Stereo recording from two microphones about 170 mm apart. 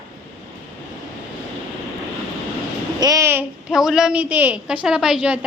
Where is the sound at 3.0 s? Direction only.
20° right (ahead or behind).